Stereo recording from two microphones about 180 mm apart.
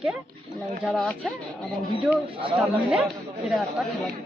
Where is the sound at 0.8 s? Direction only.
5° left (ahead or behind).